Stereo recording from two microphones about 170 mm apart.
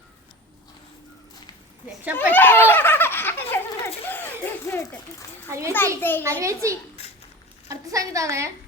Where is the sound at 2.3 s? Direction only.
10° left (ahead or behind).